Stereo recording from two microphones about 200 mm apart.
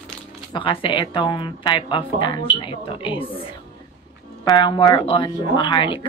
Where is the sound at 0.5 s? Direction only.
25° left (ahead or behind).